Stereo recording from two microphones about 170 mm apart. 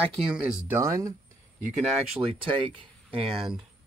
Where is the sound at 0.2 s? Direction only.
5° right (ahead or behind).